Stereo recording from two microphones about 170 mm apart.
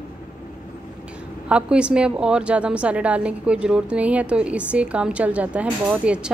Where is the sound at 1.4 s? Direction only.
5° right (ahead or behind).